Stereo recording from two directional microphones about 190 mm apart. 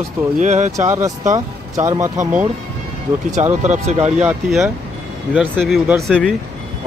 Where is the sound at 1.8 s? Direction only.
15° right (ahead or behind).